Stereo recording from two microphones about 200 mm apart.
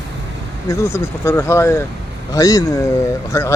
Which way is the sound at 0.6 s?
15° left (ahead or behind).